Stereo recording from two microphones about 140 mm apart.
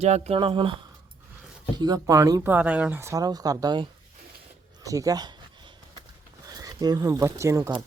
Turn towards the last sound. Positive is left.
turn(degrees=-20)  # may be behind; listen again after turning